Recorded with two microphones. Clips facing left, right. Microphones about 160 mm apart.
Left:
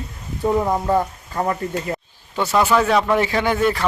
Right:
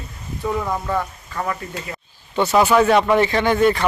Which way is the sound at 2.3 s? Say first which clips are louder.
Right 2 dB; centre (ahead or behind).